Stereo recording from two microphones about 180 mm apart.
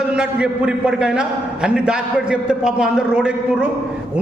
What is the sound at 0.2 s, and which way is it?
A man's voice, 5° right (ahead or behind).